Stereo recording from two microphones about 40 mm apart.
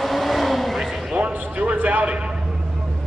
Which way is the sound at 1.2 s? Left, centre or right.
Right.